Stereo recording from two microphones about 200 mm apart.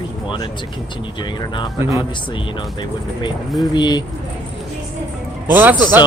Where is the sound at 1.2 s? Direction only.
25° left (ahead or behind).